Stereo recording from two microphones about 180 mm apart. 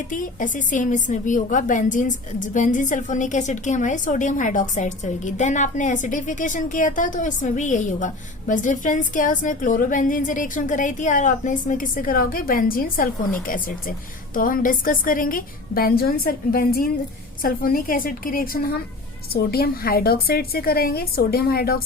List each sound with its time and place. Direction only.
0.1 s a woman's voice: 45° left (ahead or behind)